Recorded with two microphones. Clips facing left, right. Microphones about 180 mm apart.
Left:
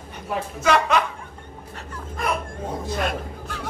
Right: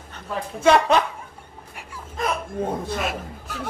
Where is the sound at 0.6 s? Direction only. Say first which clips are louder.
Right 4 dB; 30° right (ahead or behind).